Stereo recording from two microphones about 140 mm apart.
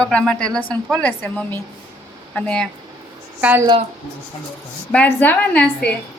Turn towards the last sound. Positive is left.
turn(degrees=10)  # may be behind; listen again after turning